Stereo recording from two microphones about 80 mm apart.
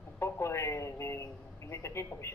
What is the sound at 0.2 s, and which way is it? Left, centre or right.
A man's voice, left.